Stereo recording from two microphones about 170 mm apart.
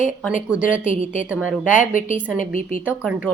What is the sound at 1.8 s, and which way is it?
Speech, 50° left (ahead or behind).